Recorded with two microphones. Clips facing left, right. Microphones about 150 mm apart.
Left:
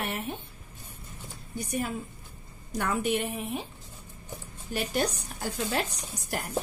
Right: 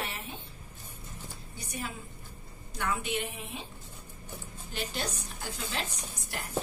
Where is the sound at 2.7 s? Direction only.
40° left (ahead or behind).